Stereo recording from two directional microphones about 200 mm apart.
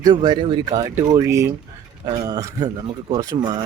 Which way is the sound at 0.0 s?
20° right (ahead or behind).